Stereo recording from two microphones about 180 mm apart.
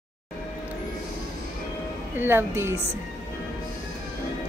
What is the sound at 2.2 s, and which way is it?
Speech, 10° right (ahead or behind).